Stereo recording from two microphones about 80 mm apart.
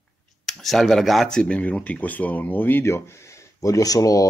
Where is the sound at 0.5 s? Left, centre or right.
Centre; by 2.9 s left.